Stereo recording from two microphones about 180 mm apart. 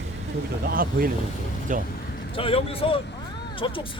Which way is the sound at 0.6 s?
55° right (ahead or behind).